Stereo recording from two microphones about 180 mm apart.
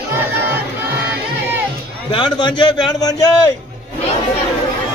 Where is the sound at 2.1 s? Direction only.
25° left (ahead or behind).